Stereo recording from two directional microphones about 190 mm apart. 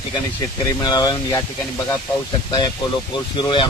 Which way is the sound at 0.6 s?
20° left (ahead or behind).